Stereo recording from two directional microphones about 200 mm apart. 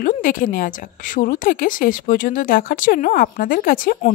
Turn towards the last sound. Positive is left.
turn(degrees=45)  # may be behind; listen again after turning